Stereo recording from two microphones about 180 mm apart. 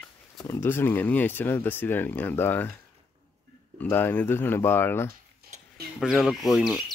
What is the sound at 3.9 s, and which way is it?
Speech, 10° left (ahead or behind).